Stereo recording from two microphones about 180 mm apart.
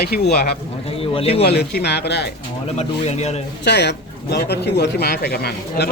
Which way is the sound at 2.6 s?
35° left (ahead or behind).